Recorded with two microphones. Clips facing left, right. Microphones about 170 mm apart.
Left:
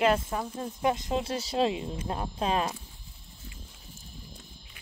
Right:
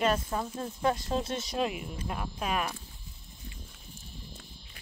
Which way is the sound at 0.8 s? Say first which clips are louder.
Left 1 dB; 15° left (ahead or behind).